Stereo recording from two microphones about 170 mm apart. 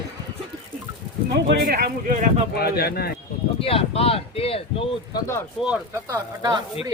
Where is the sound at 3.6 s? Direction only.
35° left (ahead or behind).